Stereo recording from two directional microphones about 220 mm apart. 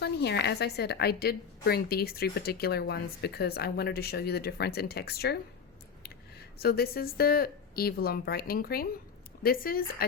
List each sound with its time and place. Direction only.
0.0 s a woman's voice: 50° left (ahead or behind)
6.6 s a woman's voice: 45° left (ahead or behind)